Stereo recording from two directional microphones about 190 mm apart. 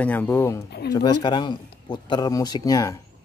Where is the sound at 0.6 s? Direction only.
60° left (ahead or behind).